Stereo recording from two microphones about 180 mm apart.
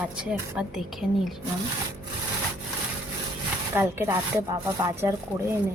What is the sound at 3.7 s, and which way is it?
Speech, 15° right (ahead or behind).